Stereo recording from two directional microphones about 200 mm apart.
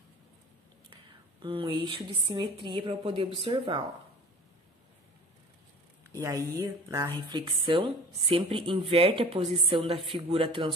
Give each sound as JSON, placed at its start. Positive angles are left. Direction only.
{"t": 1.4, "sound": "speech", "side_deg": -25}
{"t": 6.1, "sound": "speech", "side_deg": -15}